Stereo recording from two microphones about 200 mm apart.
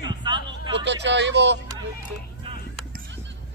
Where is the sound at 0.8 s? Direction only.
60° right (ahead or behind).